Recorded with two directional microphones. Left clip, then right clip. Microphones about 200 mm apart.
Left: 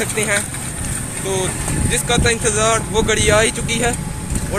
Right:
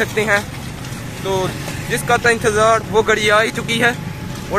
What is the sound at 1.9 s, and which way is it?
Speech, 30° right (ahead or behind).